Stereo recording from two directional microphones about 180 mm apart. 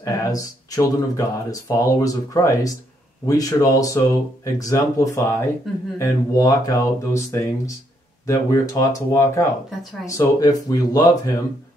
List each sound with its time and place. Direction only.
0.0 s speech: 20° left (ahead or behind)